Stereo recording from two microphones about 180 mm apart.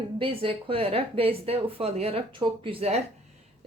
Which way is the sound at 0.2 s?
30° right (ahead or behind).